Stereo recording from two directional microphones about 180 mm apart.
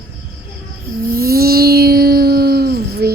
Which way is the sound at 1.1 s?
55° right (ahead or behind).